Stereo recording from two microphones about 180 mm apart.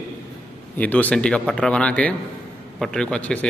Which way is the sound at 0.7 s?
10° left (ahead or behind).